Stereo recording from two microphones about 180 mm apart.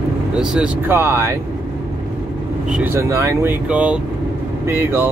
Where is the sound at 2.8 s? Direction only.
15° right (ahead or behind).